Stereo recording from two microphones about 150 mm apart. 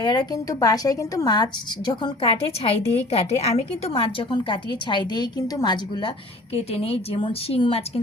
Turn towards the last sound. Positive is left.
turn(degrees=40)  # may be behind; listen again after turning